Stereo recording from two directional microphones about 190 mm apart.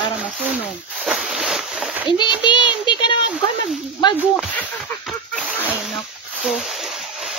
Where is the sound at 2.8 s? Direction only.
25° left (ahead or behind).